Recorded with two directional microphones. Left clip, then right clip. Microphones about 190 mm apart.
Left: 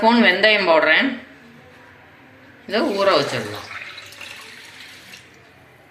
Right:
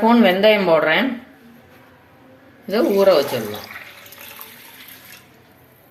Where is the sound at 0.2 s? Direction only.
65° right (ahead or behind).